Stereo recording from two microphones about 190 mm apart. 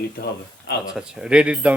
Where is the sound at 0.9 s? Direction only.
5° right (ahead or behind).